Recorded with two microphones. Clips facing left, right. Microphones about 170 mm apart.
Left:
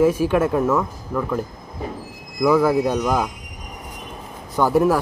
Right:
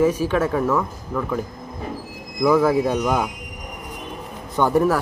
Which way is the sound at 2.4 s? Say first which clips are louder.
Even; centre (ahead or behind).